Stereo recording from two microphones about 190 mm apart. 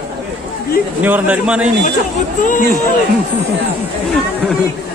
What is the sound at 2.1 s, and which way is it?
Speech, 40° left (ahead or behind).